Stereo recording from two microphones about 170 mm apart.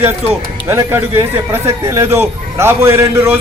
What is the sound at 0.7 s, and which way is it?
Speech, 15° right (ahead or behind).